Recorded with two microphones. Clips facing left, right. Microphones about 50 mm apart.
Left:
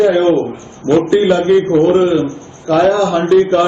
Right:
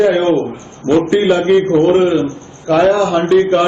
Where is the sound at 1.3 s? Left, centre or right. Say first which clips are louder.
Even; right.